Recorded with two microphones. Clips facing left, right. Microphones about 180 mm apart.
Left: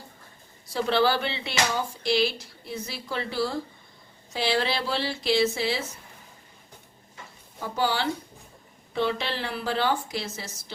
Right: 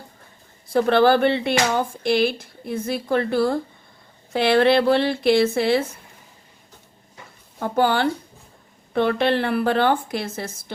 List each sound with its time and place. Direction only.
0.7 s a woman's voice: 55° right (ahead or behind)
7.6 s a woman's voice: 55° right (ahead or behind)